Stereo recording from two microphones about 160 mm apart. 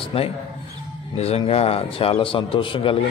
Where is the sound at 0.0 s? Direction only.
35° left (ahead or behind).